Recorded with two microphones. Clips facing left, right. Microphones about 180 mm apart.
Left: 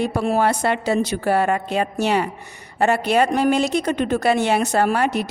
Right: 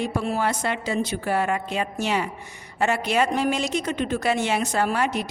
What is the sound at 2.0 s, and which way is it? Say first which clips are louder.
Speech: left 5 dB; 60° left (ahead or behind).